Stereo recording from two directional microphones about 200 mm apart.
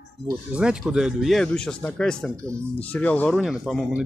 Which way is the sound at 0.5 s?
5° right (ahead or behind).